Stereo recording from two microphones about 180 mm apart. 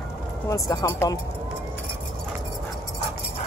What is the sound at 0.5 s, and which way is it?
Speech, 20° left (ahead or behind).